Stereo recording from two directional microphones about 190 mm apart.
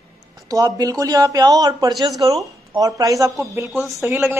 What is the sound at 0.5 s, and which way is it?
A woman's voice, 20° right (ahead or behind).